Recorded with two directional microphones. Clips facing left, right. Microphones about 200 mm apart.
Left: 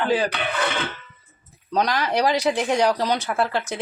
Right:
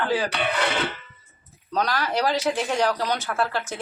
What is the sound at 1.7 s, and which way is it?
Speech, 15° left (ahead or behind).